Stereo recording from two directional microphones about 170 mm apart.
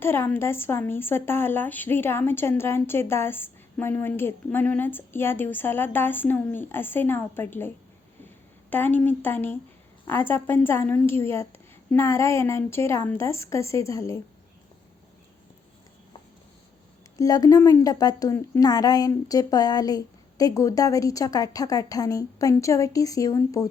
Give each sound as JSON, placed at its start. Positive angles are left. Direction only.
{"t": 0.0, "sound": "speech", "side_deg": 15}
{"t": 8.7, "sound": "speech", "side_deg": 10}
{"t": 17.2, "sound": "a woman's voice", "side_deg": 20}